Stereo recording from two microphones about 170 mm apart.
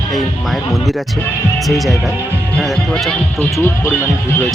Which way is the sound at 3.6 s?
15° left (ahead or behind).